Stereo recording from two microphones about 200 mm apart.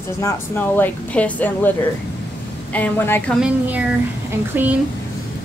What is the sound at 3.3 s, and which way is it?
Speech, 5° right (ahead or behind).